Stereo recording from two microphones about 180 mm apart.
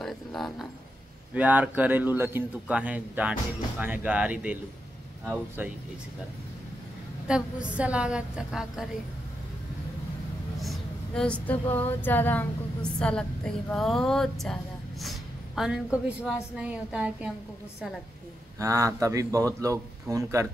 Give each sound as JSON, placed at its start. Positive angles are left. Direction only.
{"t": 0.0, "sound": "a sound", "side_deg": 0}
{"t": 1.3, "sound": "a man's voice", "side_deg": -10}
{"t": 7.2, "sound": "a woman's voice", "side_deg": -5}
{"t": 10.6, "sound": "a sound", "side_deg": 0}
{"t": 13.0, "sound": "a man's voice", "side_deg": 5}
{"t": 18.6, "sound": "speech", "side_deg": -20}